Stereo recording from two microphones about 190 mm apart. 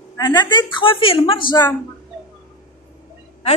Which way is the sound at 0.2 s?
20° left (ahead or behind).